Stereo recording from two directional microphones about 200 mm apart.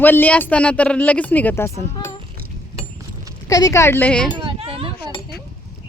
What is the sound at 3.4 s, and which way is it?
Speech, 15° left (ahead or behind).